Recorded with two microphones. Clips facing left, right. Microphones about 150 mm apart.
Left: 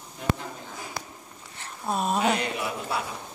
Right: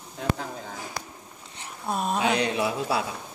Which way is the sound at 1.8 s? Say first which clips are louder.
Left 1 dB; centre (ahead or behind).